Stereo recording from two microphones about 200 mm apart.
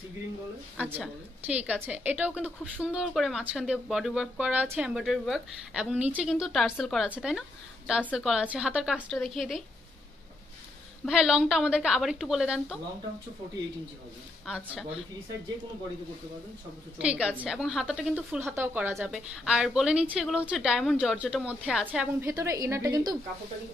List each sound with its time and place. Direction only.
0.7 s a woman's voice: 10° right (ahead or behind)
11.1 s a woman's voice: 5° right (ahead or behind)
14.4 s a woman's voice: centre (ahead or behind)
17.0 s a woman's voice: 5° right (ahead or behind)
22.2 s a woman's voice: 15° right (ahead or behind)